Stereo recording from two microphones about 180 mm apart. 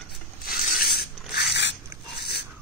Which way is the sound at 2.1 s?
65° left (ahead or behind).